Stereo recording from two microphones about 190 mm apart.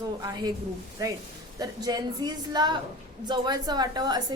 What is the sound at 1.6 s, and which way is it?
A woman's voice, 20° right (ahead or behind).